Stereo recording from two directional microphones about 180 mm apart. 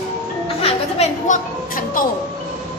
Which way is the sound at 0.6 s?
35° left (ahead or behind).